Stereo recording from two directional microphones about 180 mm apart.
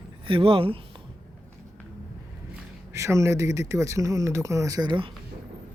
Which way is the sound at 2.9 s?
15° right (ahead or behind).